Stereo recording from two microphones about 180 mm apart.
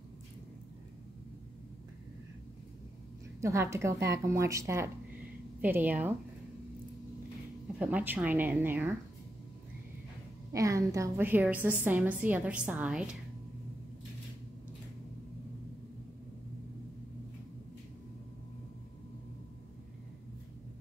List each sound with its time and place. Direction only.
3.3 s a woman's voice: 15° right (ahead or behind)
7.8 s a woman's voice: 10° right (ahead or behind)
10.5 s a woman's voice: 20° right (ahead or behind)